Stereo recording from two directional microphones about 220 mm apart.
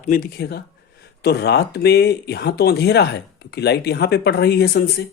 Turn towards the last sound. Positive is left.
turn(degrees=45)  # may be behind; listen again after turning